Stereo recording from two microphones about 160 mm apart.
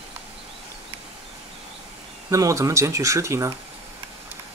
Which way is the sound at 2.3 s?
20° right (ahead or behind).